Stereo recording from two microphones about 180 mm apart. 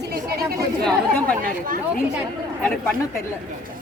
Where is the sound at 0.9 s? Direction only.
5° left (ahead or behind).